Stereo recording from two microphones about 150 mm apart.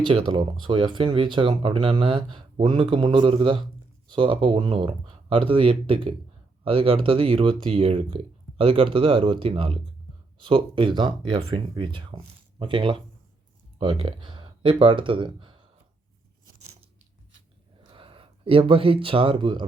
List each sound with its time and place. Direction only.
0.3 s speech: 35° right (ahead or behind)
17.9 s speech: 35° right (ahead or behind)